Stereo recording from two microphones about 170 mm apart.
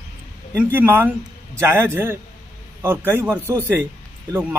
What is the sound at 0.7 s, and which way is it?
A man's voice, 10° right (ahead or behind).